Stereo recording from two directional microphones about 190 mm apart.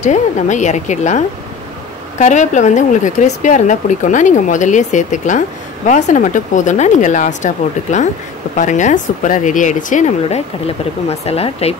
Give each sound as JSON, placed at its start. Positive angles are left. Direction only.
{"t": 0.0, "sound": "speech", "side_deg": 40}